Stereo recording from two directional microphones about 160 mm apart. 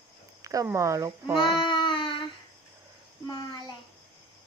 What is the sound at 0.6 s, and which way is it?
Speech, 20° right (ahead or behind).